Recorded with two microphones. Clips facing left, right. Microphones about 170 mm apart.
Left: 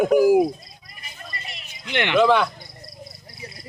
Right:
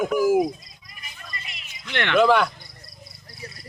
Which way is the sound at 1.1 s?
40° left (ahead or behind).